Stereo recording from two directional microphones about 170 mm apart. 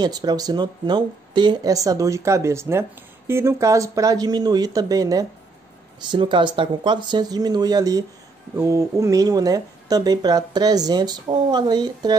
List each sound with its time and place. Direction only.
0.0 s speech: 25° right (ahead or behind)